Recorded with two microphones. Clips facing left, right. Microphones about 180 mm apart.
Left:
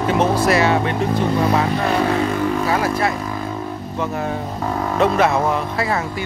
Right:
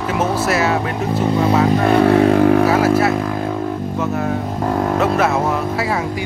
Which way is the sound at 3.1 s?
60° right (ahead or behind).